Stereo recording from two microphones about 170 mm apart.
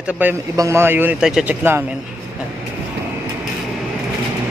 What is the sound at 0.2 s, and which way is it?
A man's voice, 15° right (ahead or behind).